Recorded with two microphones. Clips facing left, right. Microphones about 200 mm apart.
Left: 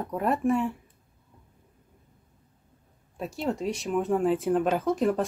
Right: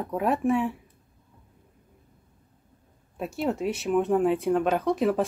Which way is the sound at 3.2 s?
Centre (ahead or behind).